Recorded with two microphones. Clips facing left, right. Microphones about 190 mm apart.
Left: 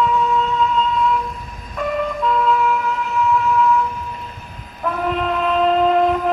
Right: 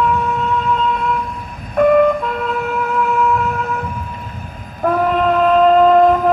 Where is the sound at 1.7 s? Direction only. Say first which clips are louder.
Right 11 dB; 55° right (ahead or behind).